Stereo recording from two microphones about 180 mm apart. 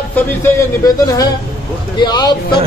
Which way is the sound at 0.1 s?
15° left (ahead or behind).